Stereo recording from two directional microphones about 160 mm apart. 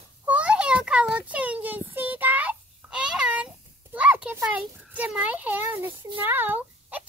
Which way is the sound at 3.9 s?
10° right (ahead or behind).